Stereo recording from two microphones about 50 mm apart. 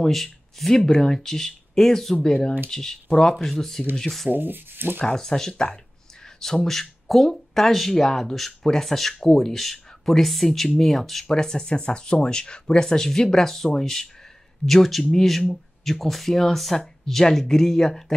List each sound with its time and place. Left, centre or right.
0.0 s speech: centre
4.3 s speech: right
5.0 s speech: centre